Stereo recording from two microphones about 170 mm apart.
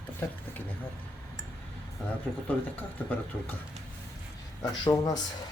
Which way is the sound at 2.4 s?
10° left (ahead or behind).